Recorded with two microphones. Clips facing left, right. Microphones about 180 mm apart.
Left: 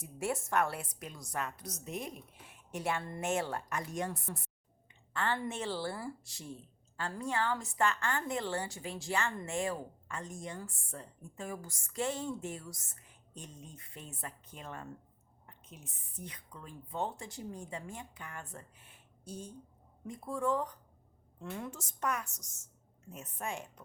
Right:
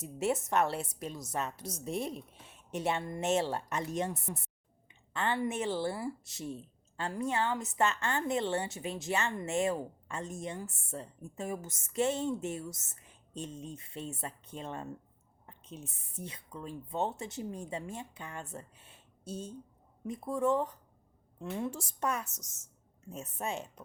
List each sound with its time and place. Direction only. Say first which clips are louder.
0.0 s a woman's voice: right 4 dB; 20° right (ahead or behind)